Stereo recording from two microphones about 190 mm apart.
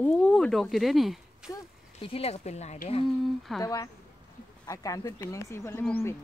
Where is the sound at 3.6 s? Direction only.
15° left (ahead or behind).